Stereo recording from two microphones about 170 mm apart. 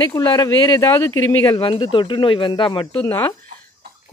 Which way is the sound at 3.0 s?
15° left (ahead or behind).